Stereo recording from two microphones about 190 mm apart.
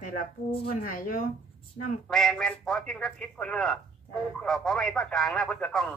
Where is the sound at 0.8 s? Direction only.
45° left (ahead or behind).